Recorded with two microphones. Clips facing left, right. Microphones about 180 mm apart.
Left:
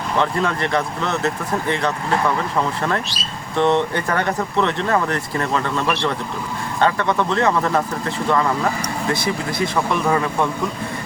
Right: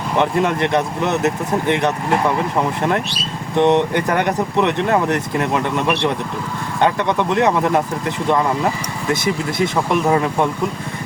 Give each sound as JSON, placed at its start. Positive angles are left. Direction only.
{"t": 0.2, "sound": "speech", "side_deg": -20}